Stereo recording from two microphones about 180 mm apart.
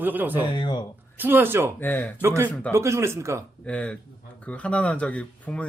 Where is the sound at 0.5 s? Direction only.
25° left (ahead or behind).